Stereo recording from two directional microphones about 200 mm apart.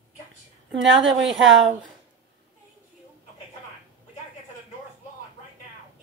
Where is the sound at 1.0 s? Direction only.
70° right (ahead or behind).